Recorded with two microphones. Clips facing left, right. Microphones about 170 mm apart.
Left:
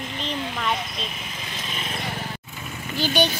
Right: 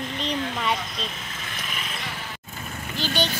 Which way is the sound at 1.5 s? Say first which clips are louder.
Left 3 dB; 25° left (ahead or behind).